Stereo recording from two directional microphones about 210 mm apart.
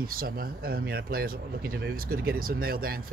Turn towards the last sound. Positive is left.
turn(degrees=-45)  # may be behind; listen again after turning